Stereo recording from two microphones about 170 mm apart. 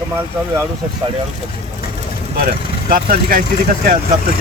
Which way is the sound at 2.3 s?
60° right (ahead or behind).